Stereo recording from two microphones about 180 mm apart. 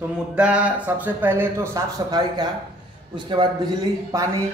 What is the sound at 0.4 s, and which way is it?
Speech, 5° right (ahead or behind).